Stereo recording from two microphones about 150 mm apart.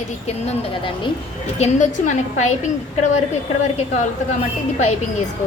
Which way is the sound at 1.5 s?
50° left (ahead or behind).